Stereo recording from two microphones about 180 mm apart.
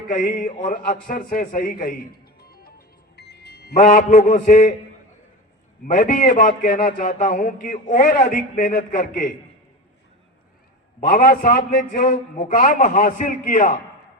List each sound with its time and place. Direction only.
0.1 s a man's voice: 50° left (ahead or behind)
2.4 s music: 60° left (ahead or behind)
3.2 s a man's voice: 65° left (ahead or behind); by 4.7 s 50° left (ahead or behind)
5.8 s a man's voice: 45° left (ahead or behind)
11.2 s a man's voice: 55° left (ahead or behind)